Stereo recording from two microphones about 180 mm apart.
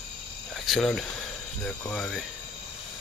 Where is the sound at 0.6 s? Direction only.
Centre (ahead or behind).